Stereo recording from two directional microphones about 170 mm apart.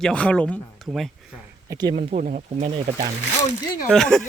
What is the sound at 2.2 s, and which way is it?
Speech, 45° right (ahead or behind).